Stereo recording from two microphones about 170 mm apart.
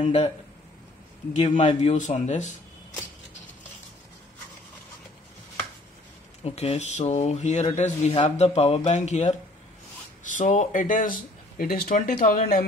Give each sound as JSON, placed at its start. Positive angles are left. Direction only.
{"t": 0.0, "sound": "speech", "side_deg": 40}
{"t": 1.3, "sound": "speech", "side_deg": 45}
{"t": 6.4, "sound": "speech", "side_deg": 35}